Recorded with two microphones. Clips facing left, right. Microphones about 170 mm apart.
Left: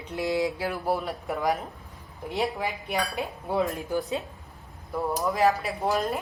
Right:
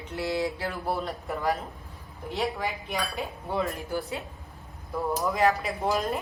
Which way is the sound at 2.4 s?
Centre (ahead or behind).